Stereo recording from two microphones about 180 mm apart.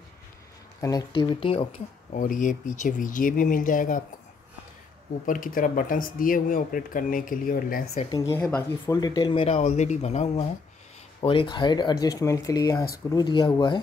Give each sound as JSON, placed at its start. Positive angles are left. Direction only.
{"t": 0.7, "sound": "speech", "side_deg": 20}
{"t": 2.1, "sound": "speech", "side_deg": 45}
{"t": 5.2, "sound": "speech", "side_deg": 50}
{"t": 8.1, "sound": "speech", "side_deg": 15}